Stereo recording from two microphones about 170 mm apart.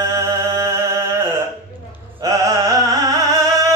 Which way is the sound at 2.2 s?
20° right (ahead or behind).